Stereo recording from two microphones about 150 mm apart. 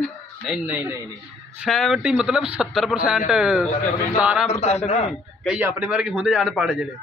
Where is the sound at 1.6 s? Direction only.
Centre (ahead or behind).